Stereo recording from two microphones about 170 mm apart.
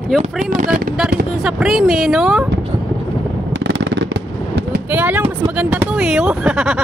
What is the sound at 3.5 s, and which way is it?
Fireworks, 90° right.